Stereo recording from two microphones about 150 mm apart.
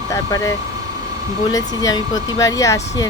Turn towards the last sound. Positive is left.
turn(degrees=20)  # may be behind; listen again after turning